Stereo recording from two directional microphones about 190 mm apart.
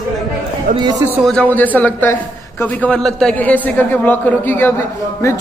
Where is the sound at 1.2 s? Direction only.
5° left (ahead or behind).